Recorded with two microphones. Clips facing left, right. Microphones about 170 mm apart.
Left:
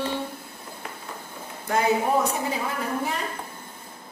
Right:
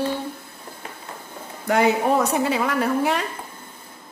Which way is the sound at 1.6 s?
75° right (ahead or behind).